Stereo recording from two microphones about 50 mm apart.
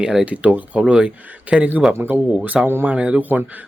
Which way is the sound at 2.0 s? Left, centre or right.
Right.